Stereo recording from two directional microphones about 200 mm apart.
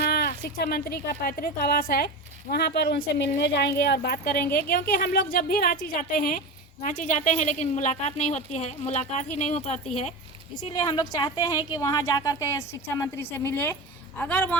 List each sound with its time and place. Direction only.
0.0 s a woman's voice: 50° left (ahead or behind)
10.6 s a woman's voice: 20° left (ahead or behind)